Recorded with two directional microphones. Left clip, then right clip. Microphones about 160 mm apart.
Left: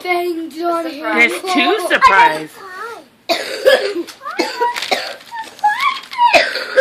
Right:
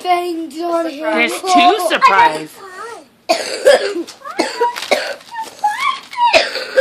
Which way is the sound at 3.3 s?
45° right (ahead or behind).